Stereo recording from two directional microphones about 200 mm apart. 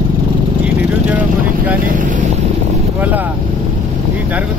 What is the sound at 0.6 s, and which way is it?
Vehicle, 5° right (ahead or behind).